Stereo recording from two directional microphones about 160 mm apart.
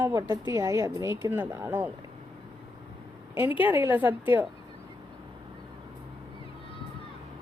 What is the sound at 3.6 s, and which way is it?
Speech, 15° right (ahead or behind).